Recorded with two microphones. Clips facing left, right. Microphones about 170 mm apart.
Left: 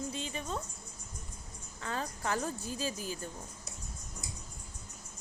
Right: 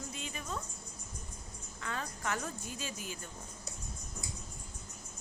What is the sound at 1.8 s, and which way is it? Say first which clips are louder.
A woman's voice: left 3 dB; 35° left (ahead or behind).